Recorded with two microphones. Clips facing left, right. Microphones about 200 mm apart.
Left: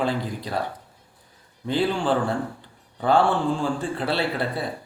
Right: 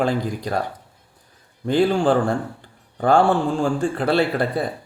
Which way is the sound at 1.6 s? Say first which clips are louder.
Right 6 dB; 45° right (ahead or behind).